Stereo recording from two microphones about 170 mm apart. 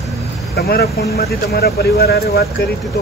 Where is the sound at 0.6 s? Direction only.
65° left (ahead or behind).